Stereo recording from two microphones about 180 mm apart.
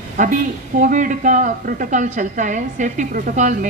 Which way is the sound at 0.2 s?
45° right (ahead or behind).